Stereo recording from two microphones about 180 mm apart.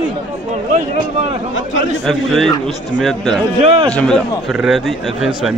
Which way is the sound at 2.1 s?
Centre (ahead or behind).